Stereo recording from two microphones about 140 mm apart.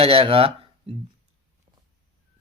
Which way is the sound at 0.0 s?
45° right (ahead or behind).